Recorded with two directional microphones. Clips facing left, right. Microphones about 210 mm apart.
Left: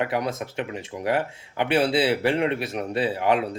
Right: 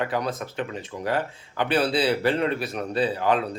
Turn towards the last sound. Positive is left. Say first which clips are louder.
# even
turn(degrees=25)  # may be behind; listen again after turning